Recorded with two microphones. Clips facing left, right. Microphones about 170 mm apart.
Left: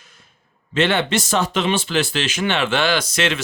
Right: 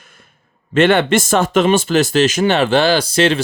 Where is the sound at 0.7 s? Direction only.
50° right (ahead or behind); by 3.4 s 35° right (ahead or behind).